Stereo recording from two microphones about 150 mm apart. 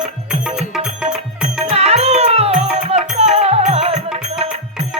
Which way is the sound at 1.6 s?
45° right (ahead or behind).